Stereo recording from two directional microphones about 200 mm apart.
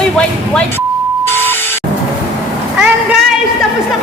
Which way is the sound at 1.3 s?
10° left (ahead or behind).